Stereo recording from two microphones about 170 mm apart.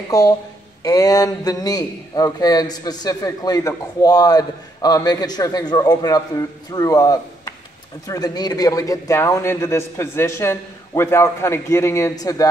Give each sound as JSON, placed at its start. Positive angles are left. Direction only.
{"t": 0.1, "sound": "a man's voice", "side_deg": 20}